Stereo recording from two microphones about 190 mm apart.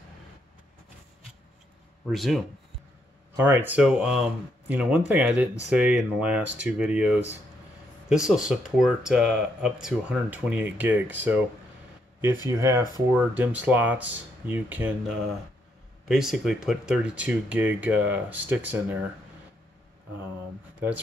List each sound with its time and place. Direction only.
2.0 s speech: centre (ahead or behind)
3.3 s speech: 10° right (ahead or behind)
12.4 s speech: 15° right (ahead or behind)